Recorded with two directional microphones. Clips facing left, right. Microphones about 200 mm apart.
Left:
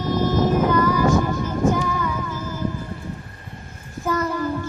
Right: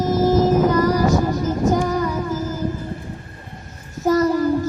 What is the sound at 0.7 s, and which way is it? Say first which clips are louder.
Child singing: right 1 dB; 40° right (ahead or behind).